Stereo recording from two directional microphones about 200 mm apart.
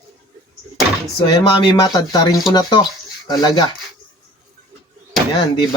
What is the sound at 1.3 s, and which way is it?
Speech, 25° left (ahead or behind).